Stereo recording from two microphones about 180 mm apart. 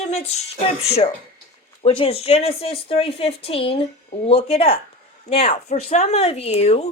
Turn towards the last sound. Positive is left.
turn(degrees=35)  # may be behind; listen again after turning